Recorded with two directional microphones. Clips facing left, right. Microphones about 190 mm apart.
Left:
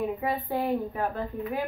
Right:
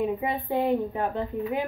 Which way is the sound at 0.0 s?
20° right (ahead or behind).